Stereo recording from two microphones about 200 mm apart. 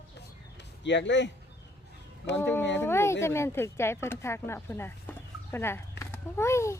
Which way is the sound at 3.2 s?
15° left (ahead or behind).